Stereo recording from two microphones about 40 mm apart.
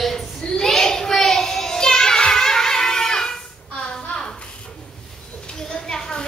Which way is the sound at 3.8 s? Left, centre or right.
Left.